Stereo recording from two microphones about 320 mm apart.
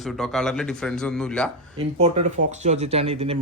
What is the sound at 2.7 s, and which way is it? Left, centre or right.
Speech, centre.